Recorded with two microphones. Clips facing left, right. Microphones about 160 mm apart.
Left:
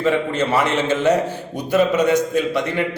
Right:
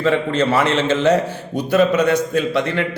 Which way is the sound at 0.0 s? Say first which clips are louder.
Right 2 dB; 15° left (ahead or behind).